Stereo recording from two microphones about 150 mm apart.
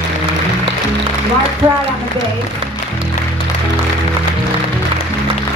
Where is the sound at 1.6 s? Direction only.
35° right (ahead or behind).